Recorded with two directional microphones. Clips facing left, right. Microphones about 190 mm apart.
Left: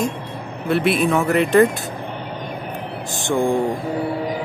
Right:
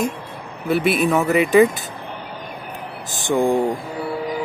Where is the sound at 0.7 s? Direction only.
Centre (ahead or behind).